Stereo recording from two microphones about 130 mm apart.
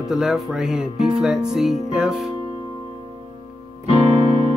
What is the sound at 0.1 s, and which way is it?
Speech, 5° right (ahead or behind).